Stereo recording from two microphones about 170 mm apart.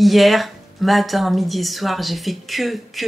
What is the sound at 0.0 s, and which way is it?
Speech, centre (ahead or behind).